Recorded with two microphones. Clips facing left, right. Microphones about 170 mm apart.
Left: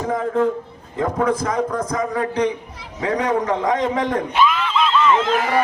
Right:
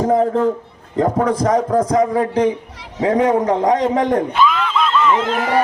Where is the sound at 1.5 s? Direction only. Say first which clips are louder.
Right 6 dB; 35° right (ahead or behind).